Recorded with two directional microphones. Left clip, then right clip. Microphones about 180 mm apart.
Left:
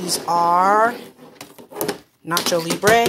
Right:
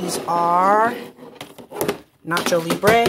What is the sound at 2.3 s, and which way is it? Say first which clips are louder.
Speech: right 1 dB; 5° left (ahead or behind).